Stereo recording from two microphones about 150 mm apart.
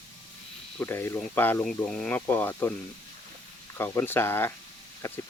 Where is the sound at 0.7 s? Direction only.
15° left (ahead or behind).